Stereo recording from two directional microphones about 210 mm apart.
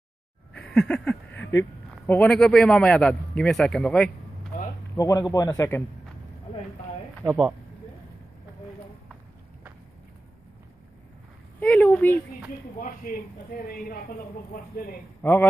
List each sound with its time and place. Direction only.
0.6 s a sound: 5° left (ahead or behind)
2.0 s a man's voice: 5° left (ahead or behind)
4.5 s a sound: 40° left (ahead or behind)
4.9 s a man's voice: 15° left (ahead or behind)
7.2 s a man's voice: centre (ahead or behind)
11.6 s speech: 5° left (ahead or behind)
13.7 s a woman's voice: 40° left (ahead or behind)
15.2 s a man's voice: 10° left (ahead or behind)